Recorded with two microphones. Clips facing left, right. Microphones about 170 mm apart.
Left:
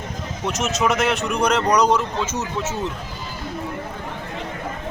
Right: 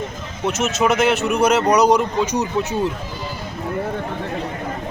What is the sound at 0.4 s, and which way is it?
A man's voice, centre (ahead or behind).